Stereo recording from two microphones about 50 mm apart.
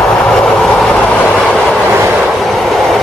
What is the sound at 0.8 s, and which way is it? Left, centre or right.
Train, left.